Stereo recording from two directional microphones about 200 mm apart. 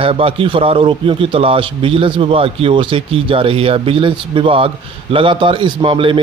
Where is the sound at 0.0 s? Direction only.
30° right (ahead or behind).